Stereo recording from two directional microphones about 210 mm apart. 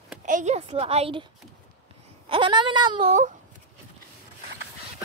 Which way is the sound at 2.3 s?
25° right (ahead or behind).